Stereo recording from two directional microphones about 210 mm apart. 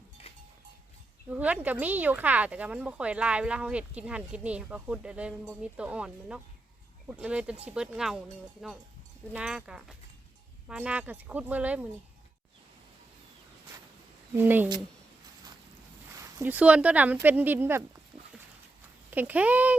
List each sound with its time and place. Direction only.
1.3 s speech: 5° right (ahead or behind)
14.3 s speech: 10° right (ahead or behind)
16.1 s speech: 10° right (ahead or behind)
19.1 s speech: 10° right (ahead or behind)